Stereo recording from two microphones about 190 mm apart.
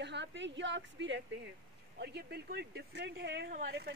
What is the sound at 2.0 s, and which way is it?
Speech, 60° right (ahead or behind).